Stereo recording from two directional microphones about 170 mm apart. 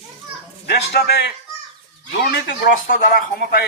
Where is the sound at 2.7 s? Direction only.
55° left (ahead or behind).